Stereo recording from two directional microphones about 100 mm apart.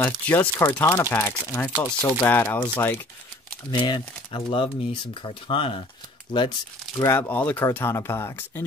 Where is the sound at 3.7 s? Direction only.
50° left (ahead or behind).